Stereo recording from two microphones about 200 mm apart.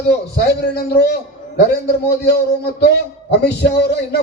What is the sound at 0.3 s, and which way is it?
Music, 55° left (ahead or behind).